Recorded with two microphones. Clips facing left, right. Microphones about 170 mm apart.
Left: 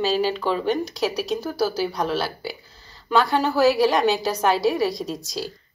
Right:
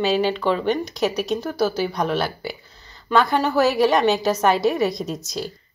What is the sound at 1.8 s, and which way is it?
Speech, 5° left (ahead or behind).